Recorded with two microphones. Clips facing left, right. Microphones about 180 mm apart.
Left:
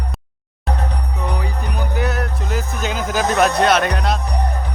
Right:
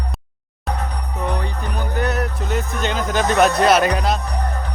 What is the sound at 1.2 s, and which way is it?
A man's voice, 5° left (ahead or behind).